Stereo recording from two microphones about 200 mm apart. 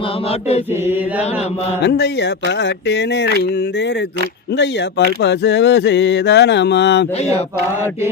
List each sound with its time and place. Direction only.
1.8 s speech: 60° left (ahead or behind)